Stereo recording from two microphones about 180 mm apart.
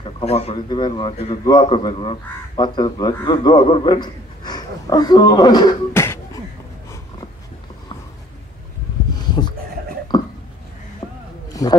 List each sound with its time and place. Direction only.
0.0 s speech: 35° left (ahead or behind)
0.7 s speech: 25° left (ahead or behind)
10.1 s a sound: 20° left (ahead or behind)